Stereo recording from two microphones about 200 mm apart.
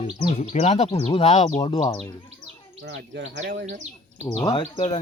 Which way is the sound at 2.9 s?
65° right (ahead or behind).